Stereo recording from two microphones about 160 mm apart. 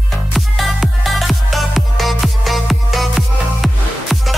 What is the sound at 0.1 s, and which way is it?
Music, centre (ahead or behind).